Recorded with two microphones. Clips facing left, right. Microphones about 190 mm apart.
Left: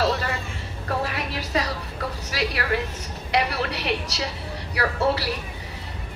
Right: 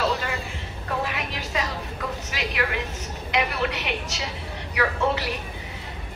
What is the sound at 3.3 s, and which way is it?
A woman's voice, 35° left (ahead or behind).